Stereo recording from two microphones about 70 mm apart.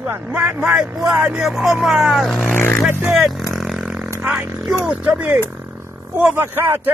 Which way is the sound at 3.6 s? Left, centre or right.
Centre.